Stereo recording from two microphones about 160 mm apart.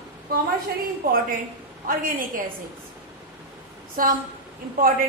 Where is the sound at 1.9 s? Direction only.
60° right (ahead or behind).